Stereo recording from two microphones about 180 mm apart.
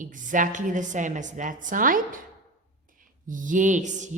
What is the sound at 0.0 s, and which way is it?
A woman's voice, 45° right (ahead or behind).